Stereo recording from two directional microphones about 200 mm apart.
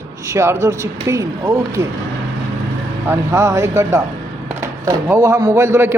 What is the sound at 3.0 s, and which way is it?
Speech, 15° right (ahead or behind).